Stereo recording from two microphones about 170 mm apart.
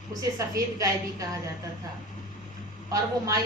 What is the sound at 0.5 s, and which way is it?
Speech, 20° right (ahead or behind).